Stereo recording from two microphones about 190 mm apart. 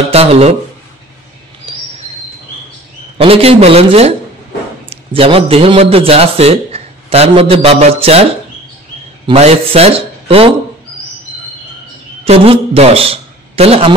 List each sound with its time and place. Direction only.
0.1 s speech: 30° right (ahead or behind)
3.2 s a man's voice: 30° right (ahead or behind)
12.3 s a man's voice: 35° right (ahead or behind)